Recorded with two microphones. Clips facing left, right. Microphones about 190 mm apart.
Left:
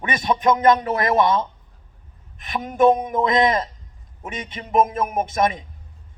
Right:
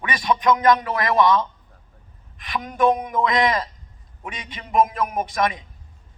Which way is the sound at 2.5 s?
25° left (ahead or behind).